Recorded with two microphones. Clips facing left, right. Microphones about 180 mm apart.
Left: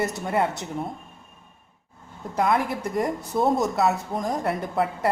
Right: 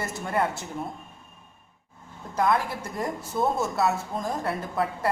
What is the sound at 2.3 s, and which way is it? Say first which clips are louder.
A woman's voice: left 2 dB; 20° left (ahead or behind).